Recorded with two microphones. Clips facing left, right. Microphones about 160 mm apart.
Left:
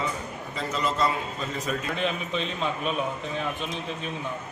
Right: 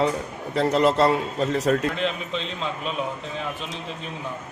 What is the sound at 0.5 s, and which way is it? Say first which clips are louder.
A man's voice: right 10 dB; 70° right (ahead or behind).